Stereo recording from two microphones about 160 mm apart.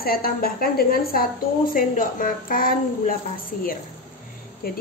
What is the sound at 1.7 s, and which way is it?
A woman's voice, 60° left (ahead or behind).